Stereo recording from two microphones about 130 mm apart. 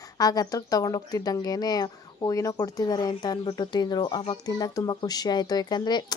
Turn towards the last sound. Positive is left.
turn(degrees=35)  # may be behind; listen again after turning